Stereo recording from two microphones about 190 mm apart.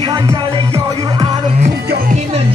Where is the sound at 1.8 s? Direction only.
55° right (ahead or behind).